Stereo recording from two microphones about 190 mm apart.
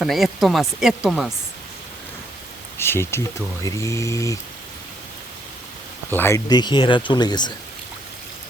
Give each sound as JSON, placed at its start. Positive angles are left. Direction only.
{"t": 0.0, "sound": "speech", "side_deg": 0}
{"t": 2.7, "sound": "speech", "side_deg": 15}
{"t": 6.1, "sound": "speech", "side_deg": 10}